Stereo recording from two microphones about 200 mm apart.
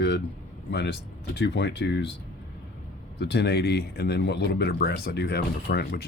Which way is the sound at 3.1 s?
55° left (ahead or behind).